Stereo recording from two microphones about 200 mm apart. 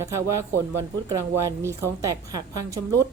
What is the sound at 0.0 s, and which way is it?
Speech, 15° right (ahead or behind).